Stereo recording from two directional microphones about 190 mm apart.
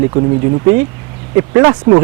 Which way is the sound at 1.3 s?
15° right (ahead or behind).